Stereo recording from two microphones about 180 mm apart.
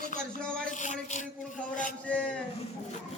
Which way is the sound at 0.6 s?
40° left (ahead or behind).